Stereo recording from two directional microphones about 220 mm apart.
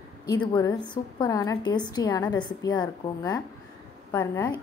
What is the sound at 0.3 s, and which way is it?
A woman's voice, 15° left (ahead or behind).